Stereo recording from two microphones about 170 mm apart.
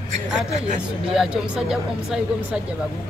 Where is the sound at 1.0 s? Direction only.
5° right (ahead or behind).